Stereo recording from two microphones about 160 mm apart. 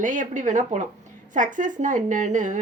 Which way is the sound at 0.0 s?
50° right (ahead or behind).